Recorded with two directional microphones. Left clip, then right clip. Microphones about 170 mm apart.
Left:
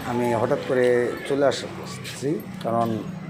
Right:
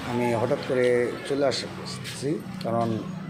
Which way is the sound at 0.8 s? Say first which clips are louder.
Left 2 dB; 20° right (ahead or behind).